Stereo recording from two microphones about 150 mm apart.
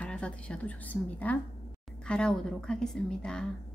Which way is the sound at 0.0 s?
5° left (ahead or behind).